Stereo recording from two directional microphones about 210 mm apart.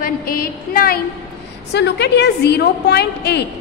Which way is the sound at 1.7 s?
55° left (ahead or behind).